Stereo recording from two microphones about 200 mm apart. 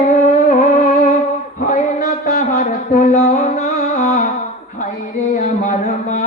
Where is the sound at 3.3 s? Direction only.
40° left (ahead or behind).